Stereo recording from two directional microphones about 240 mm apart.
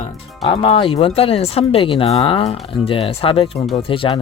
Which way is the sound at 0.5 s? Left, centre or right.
Left.